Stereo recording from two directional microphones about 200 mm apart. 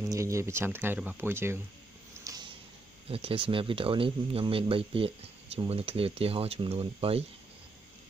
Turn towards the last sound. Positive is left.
turn(degrees=-30)  # may be behind; listen again after turning